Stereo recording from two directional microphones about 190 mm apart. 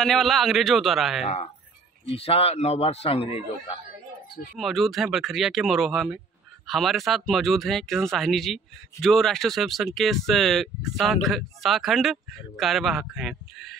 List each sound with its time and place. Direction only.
0.0 s speech: centre (ahead or behind)
1.2 s a man's voice: 35° left (ahead or behind)
4.6 s speech: centre (ahead or behind)